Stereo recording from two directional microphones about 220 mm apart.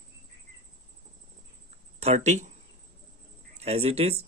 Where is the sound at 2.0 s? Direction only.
30° right (ahead or behind).